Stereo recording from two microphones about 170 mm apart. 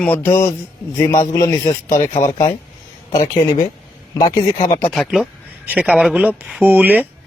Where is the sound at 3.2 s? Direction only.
50° left (ahead or behind).